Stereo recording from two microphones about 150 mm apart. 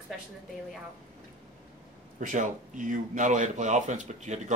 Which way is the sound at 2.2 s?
60° right (ahead or behind).